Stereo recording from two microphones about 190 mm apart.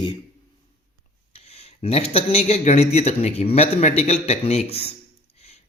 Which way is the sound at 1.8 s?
30° left (ahead or behind).